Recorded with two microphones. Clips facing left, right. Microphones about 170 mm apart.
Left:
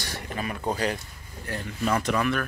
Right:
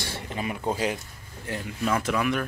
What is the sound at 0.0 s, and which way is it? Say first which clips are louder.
Speech: right 1 dB; 25° right (ahead or behind).